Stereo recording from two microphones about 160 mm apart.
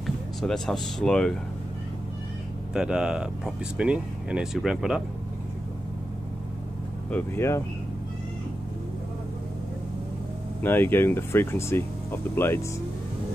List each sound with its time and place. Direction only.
0.0 s speech: centre (ahead or behind)
2.7 s speech: 5° right (ahead or behind)
7.1 s speech: 15° left (ahead or behind)
10.6 s speech: 15° left (ahead or behind)